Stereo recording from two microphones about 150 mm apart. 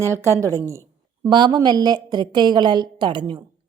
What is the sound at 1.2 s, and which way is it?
Speech, 30° right (ahead or behind).